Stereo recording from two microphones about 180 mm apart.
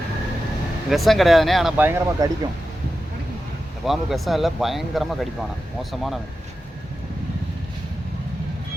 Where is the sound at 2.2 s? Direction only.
20° right (ahead or behind).